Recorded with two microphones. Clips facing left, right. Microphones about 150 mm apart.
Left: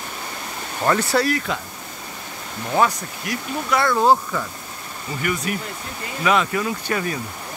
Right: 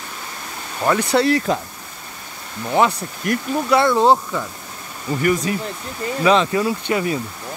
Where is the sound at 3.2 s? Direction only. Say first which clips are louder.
Right 7 dB; 50° right (ahead or behind).